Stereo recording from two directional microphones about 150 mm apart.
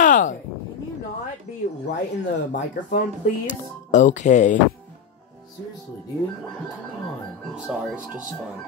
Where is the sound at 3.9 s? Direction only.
55° left (ahead or behind).